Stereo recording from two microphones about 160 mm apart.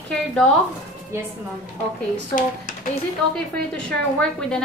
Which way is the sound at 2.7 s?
55° left (ahead or behind).